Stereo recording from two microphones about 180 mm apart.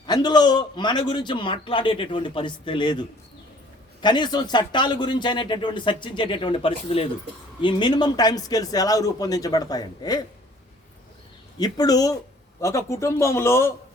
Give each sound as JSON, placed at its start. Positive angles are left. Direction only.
{"t": 0.0, "sound": "a man's voice", "side_deg": 25}
{"t": 11.5, "sound": "a man's voice", "side_deg": 20}